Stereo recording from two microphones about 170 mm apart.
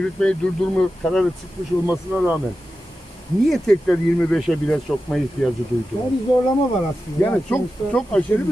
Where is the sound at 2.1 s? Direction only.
10° right (ahead or behind).